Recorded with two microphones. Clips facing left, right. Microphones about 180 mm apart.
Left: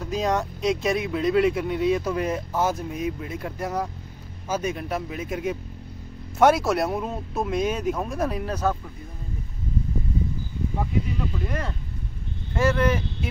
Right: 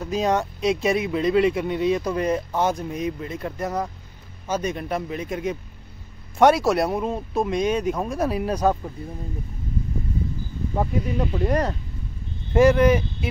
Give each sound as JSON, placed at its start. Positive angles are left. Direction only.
{"t": 0.0, "sound": "speech", "side_deg": 0}
{"t": 10.8, "sound": "speech", "side_deg": -45}
{"t": 12.5, "sound": "speech", "side_deg": -15}